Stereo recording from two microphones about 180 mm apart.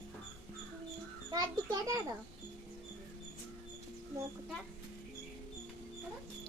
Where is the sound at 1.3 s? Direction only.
20° right (ahead or behind).